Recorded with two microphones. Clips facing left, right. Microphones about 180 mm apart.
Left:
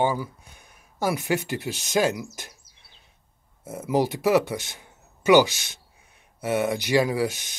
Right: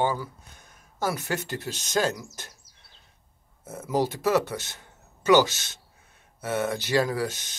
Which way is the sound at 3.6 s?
10° left (ahead or behind).